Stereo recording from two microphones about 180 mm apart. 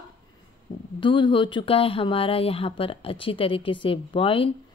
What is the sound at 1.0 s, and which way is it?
Speech, 25° left (ahead or behind).